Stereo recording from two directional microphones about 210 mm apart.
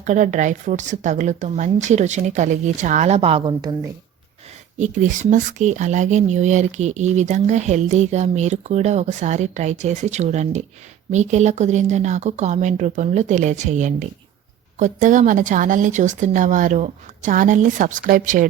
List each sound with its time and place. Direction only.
0.0 s speech: 35° right (ahead or behind); by 3.8 s 20° right (ahead or behind)
4.8 s speech: 35° right (ahead or behind)